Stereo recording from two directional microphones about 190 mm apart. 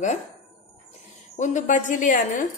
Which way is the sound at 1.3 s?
40° left (ahead or behind).